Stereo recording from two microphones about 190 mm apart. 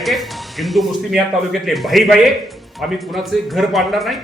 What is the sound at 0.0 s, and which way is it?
A man's voice, centre (ahead or behind).